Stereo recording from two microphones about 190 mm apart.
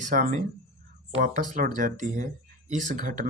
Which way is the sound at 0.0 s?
40° right (ahead or behind).